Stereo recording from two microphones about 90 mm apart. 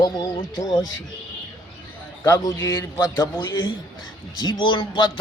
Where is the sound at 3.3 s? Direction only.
50° left (ahead or behind).